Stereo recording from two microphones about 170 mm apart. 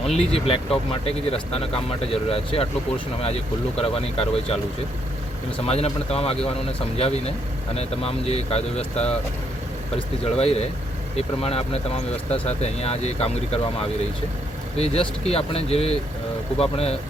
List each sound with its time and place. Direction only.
0.0 s speech: 35° left (ahead or behind)
5.6 s speech: 40° left (ahead or behind)
10.3 s speech: 35° left (ahead or behind)
15.2 s speech: 35° left (ahead or behind)